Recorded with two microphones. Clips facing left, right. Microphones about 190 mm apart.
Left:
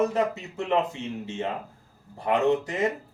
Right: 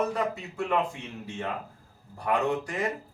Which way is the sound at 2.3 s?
20° left (ahead or behind).